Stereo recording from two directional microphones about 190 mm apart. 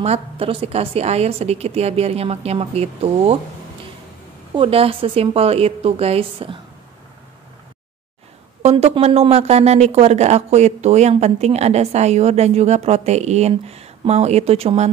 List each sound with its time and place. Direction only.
0.0 s speech: 30° right (ahead or behind)
4.6 s speech: 30° right (ahead or behind)
8.6 s speech: 30° right (ahead or behind)